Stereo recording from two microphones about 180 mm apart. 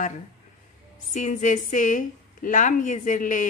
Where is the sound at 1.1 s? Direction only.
45° left (ahead or behind).